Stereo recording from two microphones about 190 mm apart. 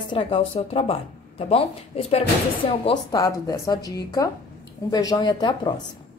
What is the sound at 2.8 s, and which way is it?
Speech, 20° left (ahead or behind).